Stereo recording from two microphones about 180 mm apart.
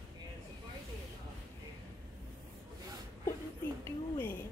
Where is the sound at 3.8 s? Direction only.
10° left (ahead or behind).